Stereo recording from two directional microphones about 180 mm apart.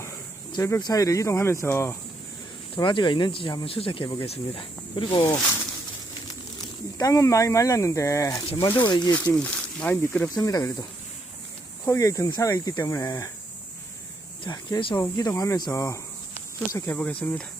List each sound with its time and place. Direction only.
0.5 s speech: 20° left (ahead or behind)
2.7 s speech: 25° left (ahead or behind)
5.4 s speech: 10° left (ahead or behind)
6.2 s speech: 20° left (ahead or behind)
8.4 s speech: 30° left (ahead or behind)
9.3 s speech: 5° left (ahead or behind)
11.9 s speech: 15° left (ahead or behind)
14.4 s speech: 25° left (ahead or behind); by 17.4 s 10° left (ahead or behind)